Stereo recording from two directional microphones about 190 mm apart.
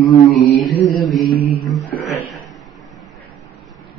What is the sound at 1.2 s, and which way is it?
Mantra, 50° left (ahead or behind).